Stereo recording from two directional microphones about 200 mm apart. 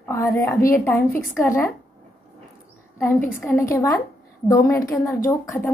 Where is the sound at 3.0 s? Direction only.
10° left (ahead or behind).